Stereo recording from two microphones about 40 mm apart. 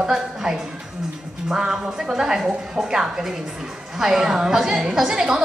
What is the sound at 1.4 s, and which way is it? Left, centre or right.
A woman's voice, centre.